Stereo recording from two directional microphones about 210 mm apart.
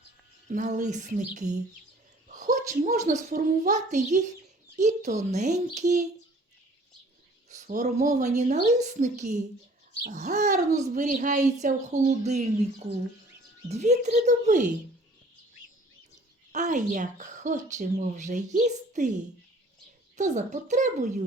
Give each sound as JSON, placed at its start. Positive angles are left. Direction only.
{"t": 0.5, "sound": "a woman's voice", "side_deg": -35}
{"t": 7.5, "sound": "a woman's voice", "side_deg": -35}
{"t": 13.7, "sound": "a woman's voice", "side_deg": -35}
{"t": 16.5, "sound": "a woman's voice", "side_deg": -35}